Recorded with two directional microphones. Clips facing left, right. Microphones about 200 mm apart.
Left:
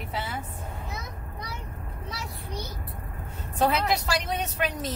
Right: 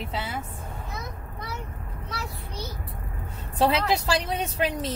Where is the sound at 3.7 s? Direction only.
30° right (ahead or behind).